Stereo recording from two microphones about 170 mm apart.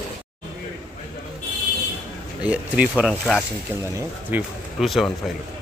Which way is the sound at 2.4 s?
5° right (ahead or behind).